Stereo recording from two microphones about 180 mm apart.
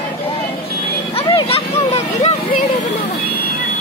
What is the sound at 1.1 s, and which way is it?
Vehicle, 35° left (ahead or behind).